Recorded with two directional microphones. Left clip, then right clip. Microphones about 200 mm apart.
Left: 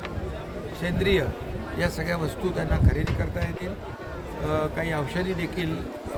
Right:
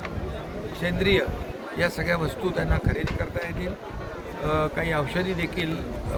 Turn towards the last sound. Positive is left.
turn(degrees=10)  # may be behind; listen again after turning